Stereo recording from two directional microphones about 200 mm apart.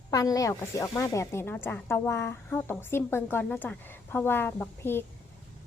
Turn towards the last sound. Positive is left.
turn(degrees=10)  # may be behind; listen again after turning